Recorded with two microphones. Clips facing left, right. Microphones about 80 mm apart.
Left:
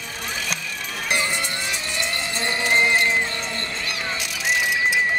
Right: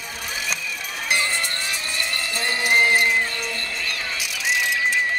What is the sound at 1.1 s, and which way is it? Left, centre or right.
Music, centre.